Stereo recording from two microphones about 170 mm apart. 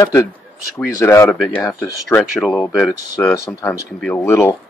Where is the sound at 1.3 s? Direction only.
Centre (ahead or behind).